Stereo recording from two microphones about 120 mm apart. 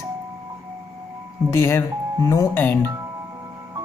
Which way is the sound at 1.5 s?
20° left (ahead or behind).